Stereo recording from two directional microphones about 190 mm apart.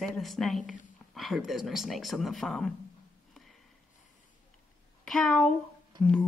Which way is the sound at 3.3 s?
Centre (ahead or behind).